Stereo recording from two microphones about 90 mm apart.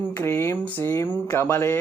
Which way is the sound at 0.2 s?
30° left (ahead or behind).